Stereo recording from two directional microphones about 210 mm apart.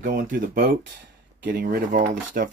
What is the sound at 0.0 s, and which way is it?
Speech, 40° right (ahead or behind).